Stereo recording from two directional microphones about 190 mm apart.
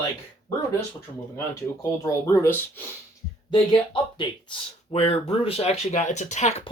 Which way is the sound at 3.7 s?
25° left (ahead or behind).